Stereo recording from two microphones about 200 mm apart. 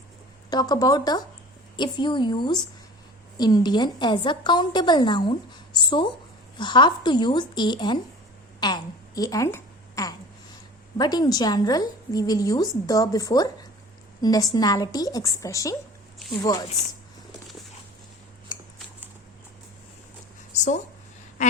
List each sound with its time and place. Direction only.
0.5 s a woman's voice: 20° left (ahead or behind)